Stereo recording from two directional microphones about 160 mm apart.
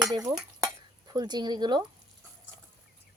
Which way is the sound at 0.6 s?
25° right (ahead or behind).